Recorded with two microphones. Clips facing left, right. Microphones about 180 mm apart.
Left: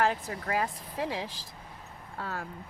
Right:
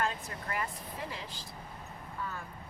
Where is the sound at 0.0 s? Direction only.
85° left.